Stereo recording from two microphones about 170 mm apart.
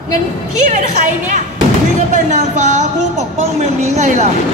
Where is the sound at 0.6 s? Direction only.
45° right (ahead or behind).